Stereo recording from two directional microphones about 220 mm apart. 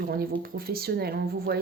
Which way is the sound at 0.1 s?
45° right (ahead or behind).